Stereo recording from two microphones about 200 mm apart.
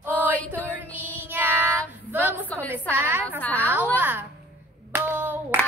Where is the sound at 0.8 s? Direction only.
10° left (ahead or behind).